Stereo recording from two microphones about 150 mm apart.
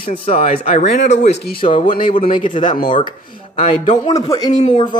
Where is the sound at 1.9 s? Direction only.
65° left (ahead or behind).